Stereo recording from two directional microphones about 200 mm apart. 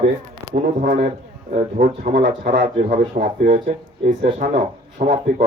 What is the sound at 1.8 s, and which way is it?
Speech, 55° right (ahead or behind).